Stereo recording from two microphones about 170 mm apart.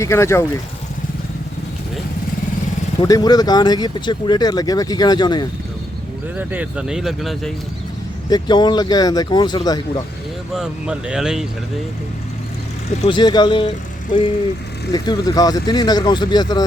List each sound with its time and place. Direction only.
0.0 s speech: 15° left (ahead or behind)
3.0 s speech: 25° left (ahead or behind)
6.3 s speech: 5° right (ahead or behind)
8.3 s speech: 25° left (ahead or behind)
10.5 s speech: 5° right (ahead or behind)
13.1 s speech: 25° left (ahead or behind)